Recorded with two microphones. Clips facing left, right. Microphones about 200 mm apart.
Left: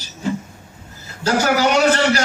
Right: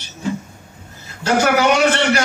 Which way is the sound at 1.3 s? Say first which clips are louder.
Right 2 dB; 35° left (ahead or behind).